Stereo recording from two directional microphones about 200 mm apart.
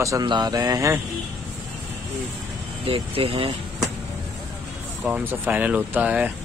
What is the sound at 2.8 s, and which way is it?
Speech, 25° right (ahead or behind).